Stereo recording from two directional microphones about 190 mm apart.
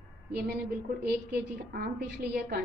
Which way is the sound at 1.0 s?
55° right (ahead or behind).